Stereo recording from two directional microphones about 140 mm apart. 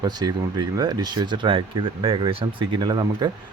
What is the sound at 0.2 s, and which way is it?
Speech, 30° right (ahead or behind).